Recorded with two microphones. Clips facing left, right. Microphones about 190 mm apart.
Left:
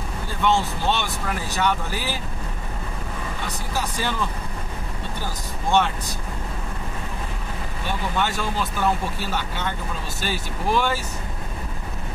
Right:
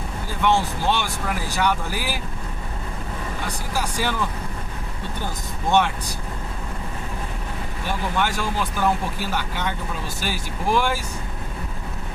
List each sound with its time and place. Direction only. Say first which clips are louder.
0.4 s speech: right 1 dB; 10° right (ahead or behind)
3.7 s speech: right 1 dB; 10° right (ahead or behind)
5.2 s speech: right 2 dB; 20° right (ahead or behind)
8.2 s speech: even; 10° right (ahead or behind)